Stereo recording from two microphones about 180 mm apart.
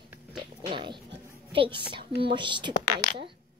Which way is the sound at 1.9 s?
25° right (ahead or behind).